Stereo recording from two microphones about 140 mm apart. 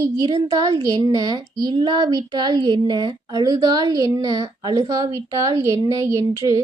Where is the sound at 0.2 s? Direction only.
35° right (ahead or behind).